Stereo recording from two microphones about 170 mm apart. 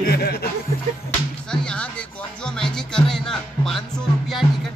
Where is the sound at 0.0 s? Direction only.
65° left (ahead or behind).